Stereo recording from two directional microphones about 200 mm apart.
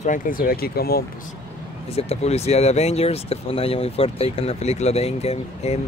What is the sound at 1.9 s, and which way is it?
Speech, 30° left (ahead or behind).